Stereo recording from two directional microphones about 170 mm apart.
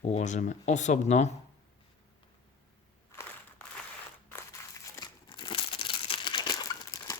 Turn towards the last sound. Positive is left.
turn(degrees=20)  # may be behind; listen again after turning